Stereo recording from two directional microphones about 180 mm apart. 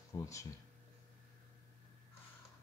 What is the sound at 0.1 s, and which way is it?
Speech, 15° left (ahead or behind).